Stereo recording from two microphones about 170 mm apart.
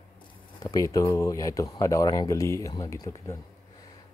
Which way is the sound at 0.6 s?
20° left (ahead or behind).